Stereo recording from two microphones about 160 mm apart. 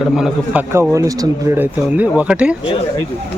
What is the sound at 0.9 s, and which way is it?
Speech, 20° right (ahead or behind).